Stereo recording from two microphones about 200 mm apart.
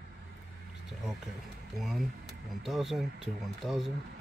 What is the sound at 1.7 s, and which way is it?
Speech, centre (ahead or behind).